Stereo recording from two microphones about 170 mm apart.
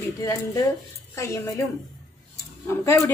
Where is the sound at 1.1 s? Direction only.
20° left (ahead or behind).